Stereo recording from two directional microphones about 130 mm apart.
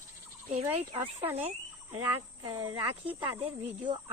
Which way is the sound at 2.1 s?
45° right (ahead or behind).